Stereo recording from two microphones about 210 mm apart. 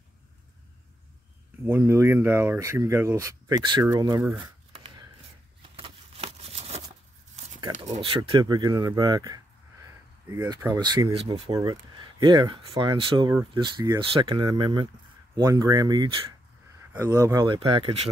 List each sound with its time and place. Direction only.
1.6 s speech: 10° right (ahead or behind)
4.4 s shuffling cards: 25° right (ahead or behind)
5.6 s a sound: 25° right (ahead or behind)
7.8 s speech: 30° right (ahead or behind)